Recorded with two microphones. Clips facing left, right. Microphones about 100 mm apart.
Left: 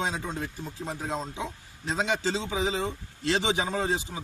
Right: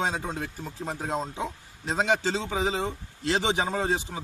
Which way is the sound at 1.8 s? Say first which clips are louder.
Right 2 dB; 50° right (ahead or behind).